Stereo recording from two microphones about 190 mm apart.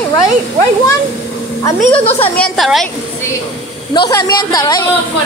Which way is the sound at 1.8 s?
10° left (ahead or behind).